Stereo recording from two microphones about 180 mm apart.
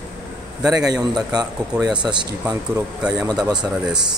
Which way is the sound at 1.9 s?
25° right (ahead or behind).